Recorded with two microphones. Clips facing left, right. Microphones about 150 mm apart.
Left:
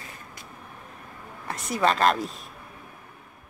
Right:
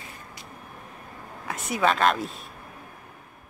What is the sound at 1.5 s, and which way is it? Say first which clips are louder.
Speech: even; 5° right (ahead or behind).